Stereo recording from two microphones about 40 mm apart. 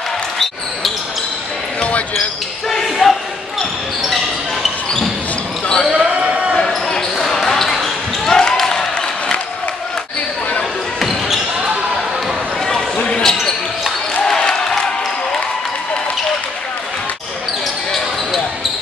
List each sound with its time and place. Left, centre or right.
1.8 s basketball bounce: left
2.7 s basketball bounce: centre
5.9 s basketball bounce: right
6.9 s basketball bounce: centre
11.0 s basketball bounce: centre
13.0 s basketball bounce: centre
14.2 s a sound: centre